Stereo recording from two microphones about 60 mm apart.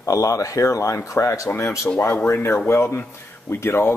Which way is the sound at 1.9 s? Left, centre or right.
Left.